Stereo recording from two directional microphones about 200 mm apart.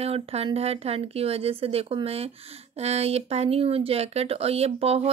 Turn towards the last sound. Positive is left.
turn(degrees=-30)  # may be behind; listen again after turning